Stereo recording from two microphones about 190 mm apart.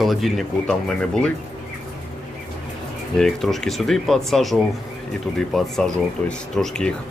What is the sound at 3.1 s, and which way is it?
Speech, centre (ahead or behind).